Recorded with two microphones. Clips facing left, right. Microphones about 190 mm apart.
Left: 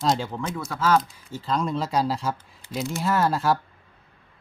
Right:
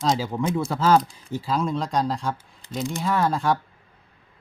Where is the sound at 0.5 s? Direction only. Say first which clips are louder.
Right 3 dB; 30° right (ahead or behind).